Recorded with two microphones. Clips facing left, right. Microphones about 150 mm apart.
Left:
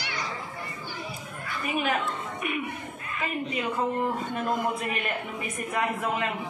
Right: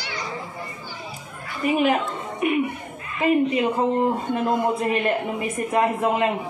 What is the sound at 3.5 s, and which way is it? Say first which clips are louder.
A man's voice: right 7 dB; 35° right (ahead or behind).